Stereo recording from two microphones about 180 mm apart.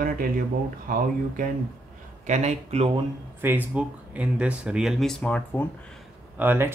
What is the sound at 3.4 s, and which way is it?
Speech, 10° right (ahead or behind).